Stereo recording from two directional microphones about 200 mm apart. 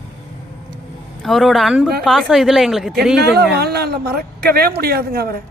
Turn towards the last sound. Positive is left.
turn(degrees=-50)  # may be behind; listen again after turning